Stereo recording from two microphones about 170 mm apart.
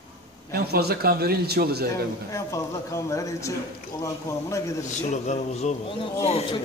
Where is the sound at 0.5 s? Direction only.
70° right (ahead or behind).